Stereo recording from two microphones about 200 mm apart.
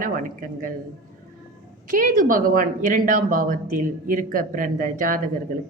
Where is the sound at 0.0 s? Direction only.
40° right (ahead or behind).